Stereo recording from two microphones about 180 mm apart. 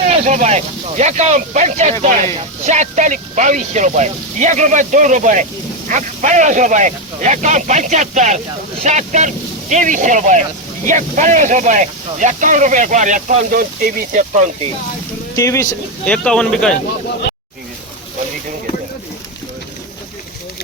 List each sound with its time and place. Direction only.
0.1 s speech: 40° right (ahead or behind)
15.4 s speech: 15° left (ahead or behind)
16.0 s speech: 5° left (ahead or behind)